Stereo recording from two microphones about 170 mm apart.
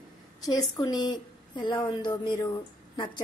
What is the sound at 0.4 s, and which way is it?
A woman's voice, 20° left (ahead or behind).